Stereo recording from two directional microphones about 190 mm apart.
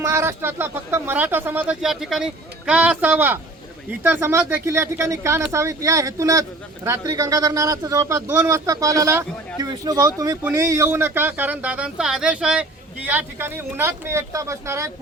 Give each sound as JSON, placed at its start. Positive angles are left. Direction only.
{"t": 0.0, "sound": "speech", "side_deg": -15}